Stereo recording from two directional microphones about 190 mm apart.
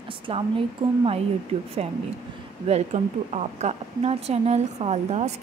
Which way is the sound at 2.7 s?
35° right (ahead or behind).